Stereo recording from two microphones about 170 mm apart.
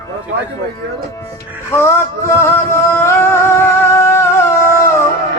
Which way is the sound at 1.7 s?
15° left (ahead or behind).